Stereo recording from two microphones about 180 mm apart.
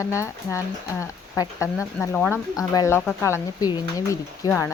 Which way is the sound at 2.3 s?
15° left (ahead or behind).